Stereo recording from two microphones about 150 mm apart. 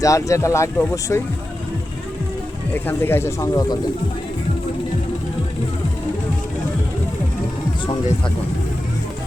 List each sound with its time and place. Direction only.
0.0 s speech: 20° left (ahead or behind)
2.7 s speech: 15° left (ahead or behind)